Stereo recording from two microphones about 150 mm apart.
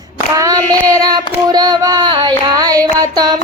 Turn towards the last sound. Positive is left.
turn(degrees=-25)  # may be behind; listen again after turning